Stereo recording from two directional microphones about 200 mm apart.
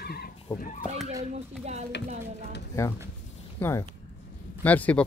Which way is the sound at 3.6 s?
10° left (ahead or behind).